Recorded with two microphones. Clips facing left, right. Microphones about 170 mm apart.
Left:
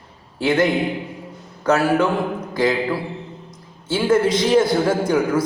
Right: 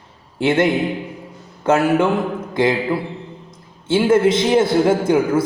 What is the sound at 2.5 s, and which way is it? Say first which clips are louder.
Mantra: right 2 dB; 25° right (ahead or behind).